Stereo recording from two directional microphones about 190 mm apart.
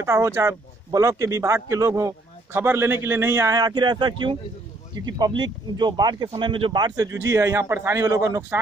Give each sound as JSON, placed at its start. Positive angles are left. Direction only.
{"t": 0.0, "sound": "speech", "side_deg": -15}